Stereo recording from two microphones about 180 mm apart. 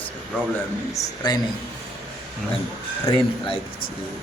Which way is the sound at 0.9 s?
20° left (ahead or behind).